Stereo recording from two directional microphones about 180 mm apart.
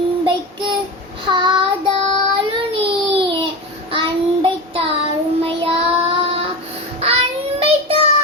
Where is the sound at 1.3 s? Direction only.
25° right (ahead or behind).